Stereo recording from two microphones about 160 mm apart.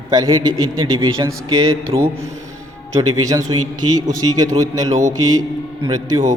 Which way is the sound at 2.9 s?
20° right (ahead or behind).